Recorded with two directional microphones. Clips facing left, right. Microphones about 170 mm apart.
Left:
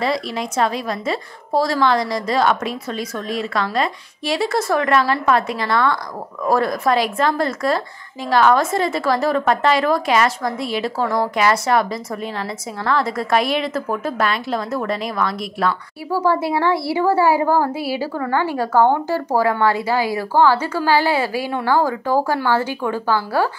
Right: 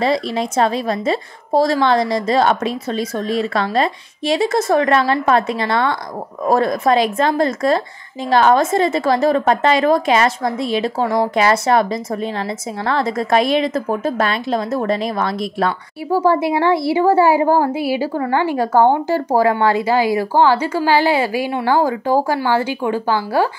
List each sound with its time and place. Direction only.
0.0 s a woman's voice: 25° right (ahead or behind)